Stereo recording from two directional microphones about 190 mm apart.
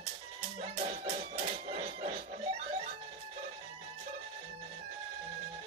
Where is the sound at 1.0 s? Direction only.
30° right (ahead or behind).